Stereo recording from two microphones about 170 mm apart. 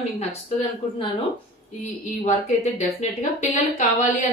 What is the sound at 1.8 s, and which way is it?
A woman's voice, 40° left (ahead or behind).